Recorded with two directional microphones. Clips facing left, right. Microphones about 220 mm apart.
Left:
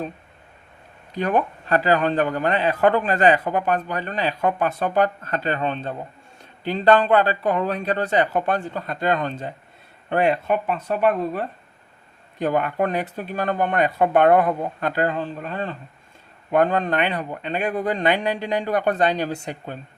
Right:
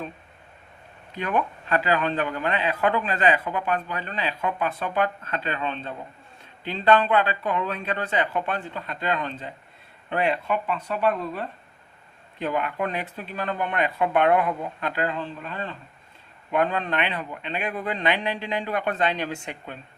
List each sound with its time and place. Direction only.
1.1 s a man's voice: 40° left (ahead or behind)